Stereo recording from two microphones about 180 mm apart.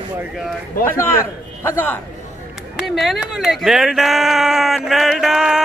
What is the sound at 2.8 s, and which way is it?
Speech, centre (ahead or behind).